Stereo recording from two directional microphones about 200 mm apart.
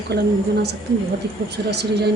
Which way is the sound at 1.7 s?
55° right (ahead or behind).